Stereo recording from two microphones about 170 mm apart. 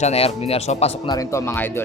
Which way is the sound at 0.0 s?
40° left (ahead or behind).